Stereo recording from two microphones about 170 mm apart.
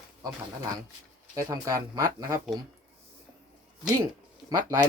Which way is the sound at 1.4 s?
20° right (ahead or behind).